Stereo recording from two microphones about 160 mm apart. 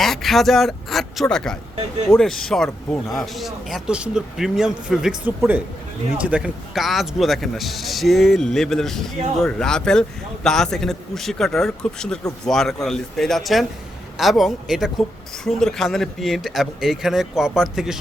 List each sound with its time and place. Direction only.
0.0 s speech: centre (ahead or behind)